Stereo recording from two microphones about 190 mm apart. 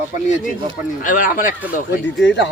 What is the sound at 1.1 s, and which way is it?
Speech, 45° left (ahead or behind).